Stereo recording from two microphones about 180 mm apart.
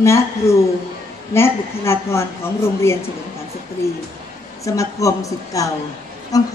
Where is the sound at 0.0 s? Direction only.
15° left (ahead or behind).